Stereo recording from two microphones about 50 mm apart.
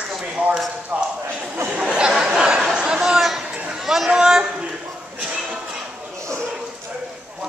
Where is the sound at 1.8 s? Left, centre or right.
Centre.